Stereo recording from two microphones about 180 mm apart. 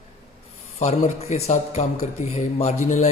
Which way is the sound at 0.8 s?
40° left (ahead or behind).